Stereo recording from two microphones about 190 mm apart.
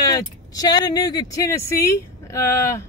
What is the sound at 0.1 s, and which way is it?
Speech, 20° left (ahead or behind).